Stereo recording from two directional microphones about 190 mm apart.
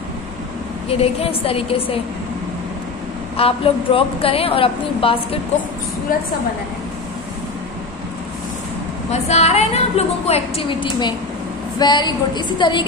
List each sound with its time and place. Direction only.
0.8 s a woman's voice: 30° left (ahead or behind)
3.3 s a woman's voice: 30° left (ahead or behind)
9.1 s a woman's voice: 35° left (ahead or behind)